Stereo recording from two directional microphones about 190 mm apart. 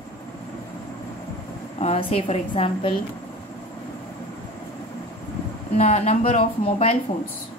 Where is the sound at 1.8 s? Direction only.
30° left (ahead or behind).